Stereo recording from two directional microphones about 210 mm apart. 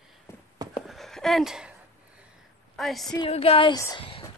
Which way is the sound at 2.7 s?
Centre (ahead or behind).